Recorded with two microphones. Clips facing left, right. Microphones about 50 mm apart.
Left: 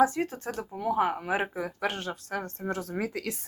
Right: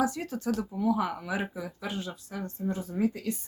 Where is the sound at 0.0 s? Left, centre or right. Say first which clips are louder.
Left 4 dB; left.